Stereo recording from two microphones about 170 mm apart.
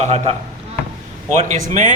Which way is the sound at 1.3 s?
45° right (ahead or behind).